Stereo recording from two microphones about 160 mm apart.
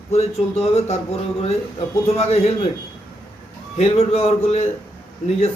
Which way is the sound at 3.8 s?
45° left (ahead or behind).